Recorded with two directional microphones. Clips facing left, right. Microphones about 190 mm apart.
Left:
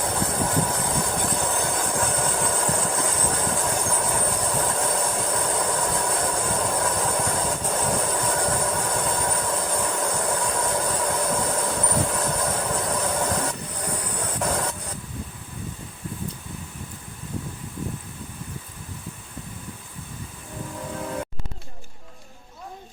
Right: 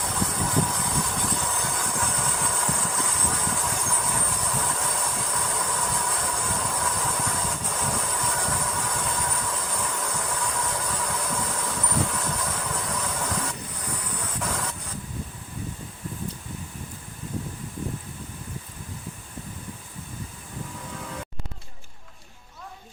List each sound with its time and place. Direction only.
0.0 s vehicle: 50° left (ahead or behind)
14.2 s printer: 45° left (ahead or behind)